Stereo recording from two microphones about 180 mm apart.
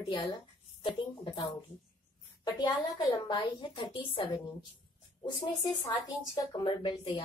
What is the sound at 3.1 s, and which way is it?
A woman's voice, 25° left (ahead or behind).